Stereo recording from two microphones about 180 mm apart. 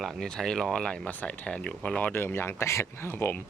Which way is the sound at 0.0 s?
Centre (ahead or behind).